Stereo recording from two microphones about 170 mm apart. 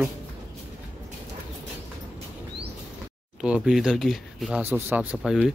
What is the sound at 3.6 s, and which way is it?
Speech, centre (ahead or behind).